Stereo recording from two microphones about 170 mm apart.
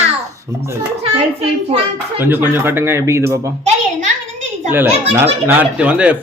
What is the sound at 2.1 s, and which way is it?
Speech, 10° right (ahead or behind).